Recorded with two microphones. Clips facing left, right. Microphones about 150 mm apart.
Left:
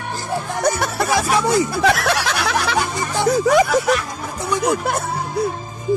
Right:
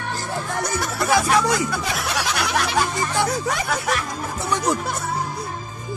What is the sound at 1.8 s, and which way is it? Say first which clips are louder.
Speech: left 8 dB; 85° left.